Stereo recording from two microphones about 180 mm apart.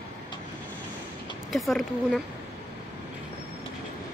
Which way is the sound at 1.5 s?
Centre (ahead or behind).